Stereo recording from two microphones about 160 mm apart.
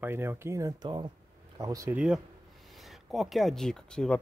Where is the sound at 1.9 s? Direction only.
5° right (ahead or behind).